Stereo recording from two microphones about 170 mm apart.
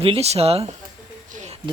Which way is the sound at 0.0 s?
35° right (ahead or behind).